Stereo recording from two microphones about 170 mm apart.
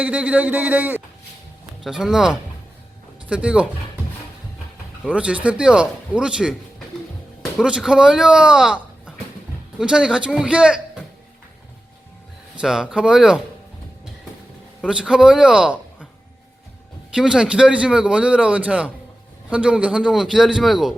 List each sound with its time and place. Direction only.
0.0 s a man's voice: 5° right (ahead or behind)
5.0 s a man's voice: 5° right (ahead or behind)
12.5 s a man's voice: 5° right (ahead or behind)
14.8 s a man's voice: 5° right (ahead or behind)
17.2 s a man's voice: 5° right (ahead or behind)